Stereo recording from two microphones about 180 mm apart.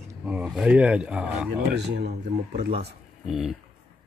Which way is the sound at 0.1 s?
10° right (ahead or behind).